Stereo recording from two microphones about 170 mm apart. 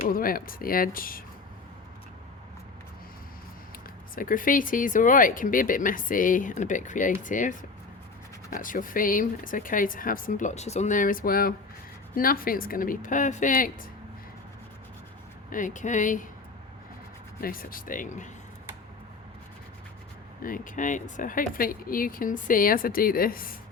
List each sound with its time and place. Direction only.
0.1 s speech: 55° left (ahead or behind)
4.1 s speech: 55° left (ahead or behind)
8.5 s speech: 50° left (ahead or behind)
15.4 s speech: 50° left (ahead or behind)
17.4 s speech: 55° left (ahead or behind)
20.4 s speech: 50° left (ahead or behind)